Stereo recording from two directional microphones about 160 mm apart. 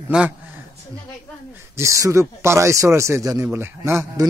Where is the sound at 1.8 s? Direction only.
20° right (ahead or behind).